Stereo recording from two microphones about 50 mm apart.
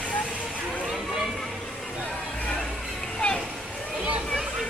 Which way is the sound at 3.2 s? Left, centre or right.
Centre.